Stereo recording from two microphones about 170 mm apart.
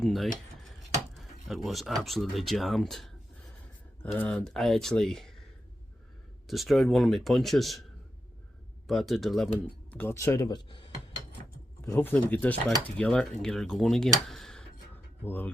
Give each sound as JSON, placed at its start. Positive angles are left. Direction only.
{"t": 0.0, "sound": "speech", "side_deg": 0}
{"t": 6.5, "sound": "speech", "side_deg": 0}
{"t": 8.9, "sound": "speech", "side_deg": 0}
{"t": 9.9, "sound": "speech", "side_deg": 15}
{"t": 11.9, "sound": "speech", "side_deg": 10}